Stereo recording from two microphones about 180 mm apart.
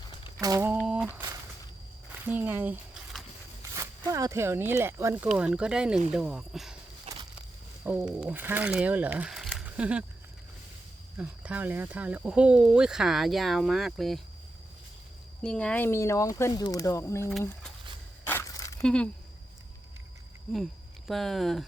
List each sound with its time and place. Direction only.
0.3 s a sound: 20° right (ahead or behind)
0.7 s a sound: 5° right (ahead or behind)
2.2 s speech: 10° right (ahead or behind)
7.9 s speech: 10° right (ahead or behind)
11.2 s speech: 10° right (ahead or behind)
15.4 s speech: 5° left (ahead or behind)
18.3 s a sound: 15° left (ahead or behind)
18.8 s speech: 5° left (ahead or behind)
21.1 s speech: centre (ahead or behind)